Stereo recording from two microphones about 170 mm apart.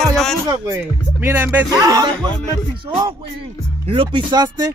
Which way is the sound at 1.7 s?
20° right (ahead or behind).